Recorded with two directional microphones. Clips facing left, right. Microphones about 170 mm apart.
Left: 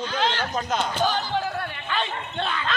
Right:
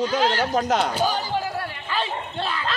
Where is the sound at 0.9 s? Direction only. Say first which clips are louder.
Right 1 dB; 10° right (ahead or behind).